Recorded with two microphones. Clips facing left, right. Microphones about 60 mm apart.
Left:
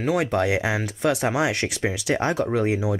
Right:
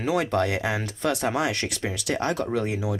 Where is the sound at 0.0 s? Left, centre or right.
Centre.